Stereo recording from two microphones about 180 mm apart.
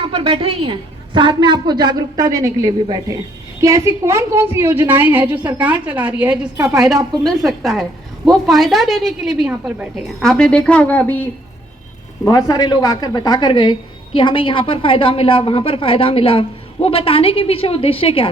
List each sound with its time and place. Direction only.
0.1 s a woman's voice: 30° right (ahead or behind); by 11.2 s 10° left (ahead or behind)
12.2 s speech: 20° left (ahead or behind)